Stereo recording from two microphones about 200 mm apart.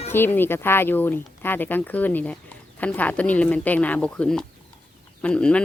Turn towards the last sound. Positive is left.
turn(degrees=5)  # may be behind; listen again after turning